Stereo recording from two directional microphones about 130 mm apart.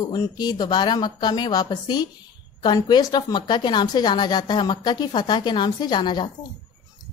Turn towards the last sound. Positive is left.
turn(degrees=35)  # may be behind; listen again after turning